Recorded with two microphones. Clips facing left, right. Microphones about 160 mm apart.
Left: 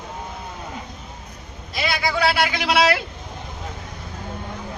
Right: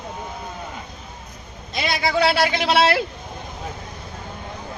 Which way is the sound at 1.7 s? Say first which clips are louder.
Right 2 dB; 25° right (ahead or behind).